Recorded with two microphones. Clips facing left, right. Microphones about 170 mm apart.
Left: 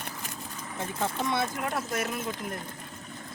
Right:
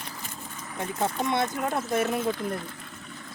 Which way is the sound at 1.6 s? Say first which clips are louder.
Right 4 dB; 30° right (ahead or behind).